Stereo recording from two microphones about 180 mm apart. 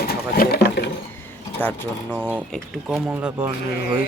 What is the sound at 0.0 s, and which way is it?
Sewing machine, 60° left (ahead or behind).